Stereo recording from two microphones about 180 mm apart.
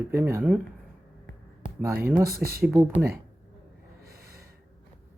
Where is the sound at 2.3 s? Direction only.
55° right (ahead or behind).